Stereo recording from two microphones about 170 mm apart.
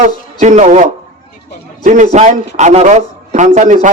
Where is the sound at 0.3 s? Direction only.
45° right (ahead or behind).